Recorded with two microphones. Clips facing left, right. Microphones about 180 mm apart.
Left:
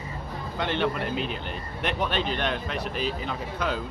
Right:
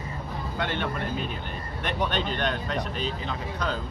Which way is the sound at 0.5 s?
50° right (ahead or behind).